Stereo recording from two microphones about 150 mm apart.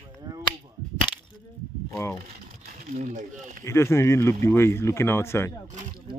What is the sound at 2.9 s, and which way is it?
Speech, 60° right (ahead or behind).